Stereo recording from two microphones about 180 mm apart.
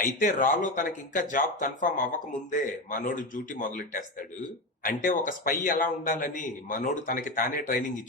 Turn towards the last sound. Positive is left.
turn(degrees=50)  # may be behind; listen again after turning